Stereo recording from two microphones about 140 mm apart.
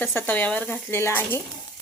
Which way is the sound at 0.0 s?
15° left (ahead or behind).